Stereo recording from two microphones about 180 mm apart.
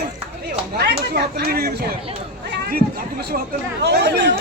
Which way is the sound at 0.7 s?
65° right (ahead or behind).